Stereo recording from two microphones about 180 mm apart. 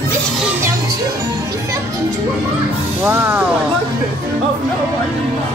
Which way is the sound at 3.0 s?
10° right (ahead or behind).